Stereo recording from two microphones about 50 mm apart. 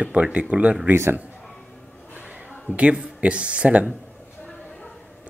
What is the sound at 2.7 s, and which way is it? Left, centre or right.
Speech, right.